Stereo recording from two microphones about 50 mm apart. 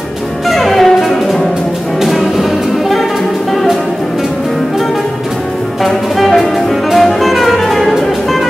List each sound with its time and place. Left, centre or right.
0.5 s music: centre
5.9 s music: centre